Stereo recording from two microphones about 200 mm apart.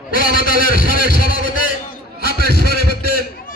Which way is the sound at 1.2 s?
45° left (ahead or behind).